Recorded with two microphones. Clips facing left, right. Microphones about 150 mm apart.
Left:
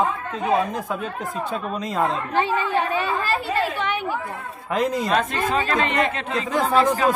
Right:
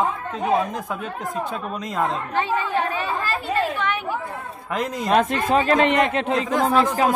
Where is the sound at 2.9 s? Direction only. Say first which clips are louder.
Left 2 dB; 25° left (ahead or behind).